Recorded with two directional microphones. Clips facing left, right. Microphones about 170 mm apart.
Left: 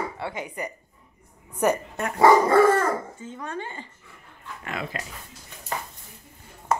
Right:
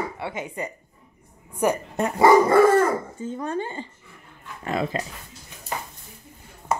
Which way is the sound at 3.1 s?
35° right (ahead or behind).